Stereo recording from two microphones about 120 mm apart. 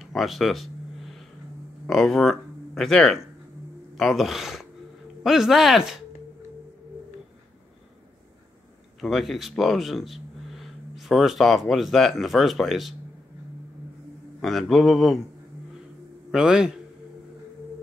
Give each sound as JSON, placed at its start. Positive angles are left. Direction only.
{"t": 0.0, "sound": "a sound", "side_deg": 0}
{"t": 1.9, "sound": "speech", "side_deg": 5}
{"t": 9.0, "sound": "speech", "side_deg": 0}
{"t": 14.4, "sound": "speech", "side_deg": 0}
{"t": 16.3, "sound": "speech", "side_deg": -5}